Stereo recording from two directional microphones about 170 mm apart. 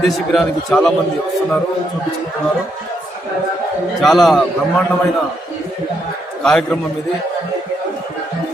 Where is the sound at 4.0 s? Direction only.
Centre (ahead or behind).